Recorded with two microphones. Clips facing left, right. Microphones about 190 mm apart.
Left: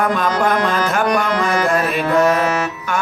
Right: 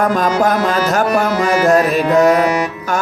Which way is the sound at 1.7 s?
40° right (ahead or behind).